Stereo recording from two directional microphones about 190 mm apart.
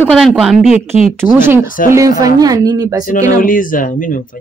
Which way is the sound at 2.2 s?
20° right (ahead or behind).